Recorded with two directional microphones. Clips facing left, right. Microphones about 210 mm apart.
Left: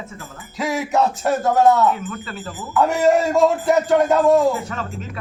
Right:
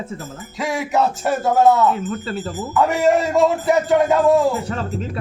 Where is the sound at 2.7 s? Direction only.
Centre (ahead or behind).